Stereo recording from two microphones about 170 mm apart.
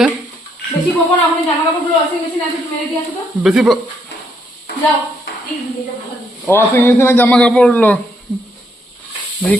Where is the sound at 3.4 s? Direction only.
5° right (ahead or behind).